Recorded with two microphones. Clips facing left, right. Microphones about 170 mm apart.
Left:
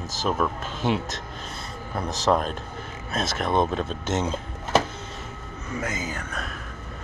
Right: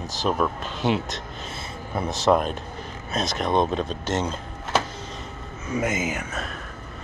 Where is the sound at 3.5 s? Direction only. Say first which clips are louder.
Right 1 dB; 20° right (ahead or behind).